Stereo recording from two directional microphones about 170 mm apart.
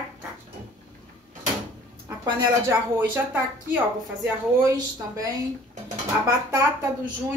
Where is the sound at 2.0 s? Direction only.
15° right (ahead or behind).